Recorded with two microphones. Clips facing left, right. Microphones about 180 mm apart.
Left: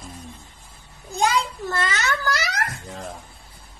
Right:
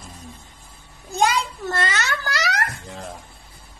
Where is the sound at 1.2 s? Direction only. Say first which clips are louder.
Right 1 dB; 75° right (ahead or behind).